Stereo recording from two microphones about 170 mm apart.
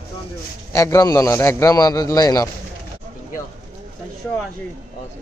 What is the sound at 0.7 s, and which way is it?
A man's voice, 20° left (ahead or behind).